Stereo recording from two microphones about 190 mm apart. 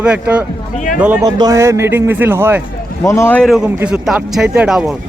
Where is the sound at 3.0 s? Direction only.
15° left (ahead or behind).